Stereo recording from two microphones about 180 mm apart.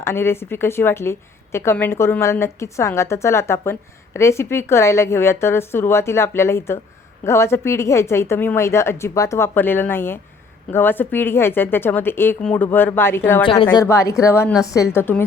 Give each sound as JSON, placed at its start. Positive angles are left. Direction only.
{"t": 0.0, "sound": "a woman's voice", "side_deg": 15}
{"t": 13.4, "sound": "a woman's voice", "side_deg": 30}
{"t": 13.7, "sound": "a woman's voice", "side_deg": 15}